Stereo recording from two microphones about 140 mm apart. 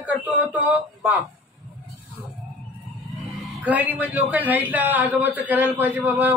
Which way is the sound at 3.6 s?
10° right (ahead or behind).